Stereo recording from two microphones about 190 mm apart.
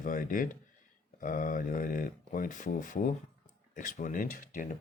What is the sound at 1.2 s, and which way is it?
Speech, 45° left (ahead or behind).